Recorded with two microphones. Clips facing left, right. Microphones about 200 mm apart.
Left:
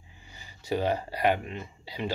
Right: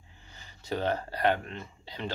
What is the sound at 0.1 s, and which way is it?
Speech, 10° left (ahead or behind).